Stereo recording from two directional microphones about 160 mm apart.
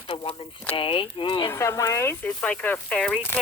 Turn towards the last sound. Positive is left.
turn(degrees=5)  # may be behind; listen again after turning